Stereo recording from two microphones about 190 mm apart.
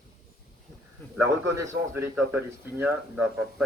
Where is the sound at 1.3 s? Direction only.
15° right (ahead or behind).